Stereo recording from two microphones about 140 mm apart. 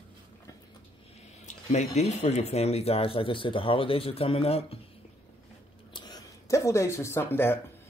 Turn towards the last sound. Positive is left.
turn(degrees=15)  # may be behind; listen again after turning